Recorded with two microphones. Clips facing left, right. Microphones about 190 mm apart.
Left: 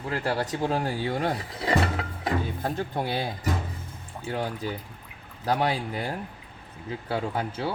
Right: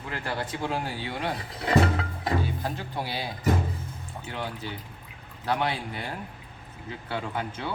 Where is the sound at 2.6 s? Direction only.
50° left (ahead or behind).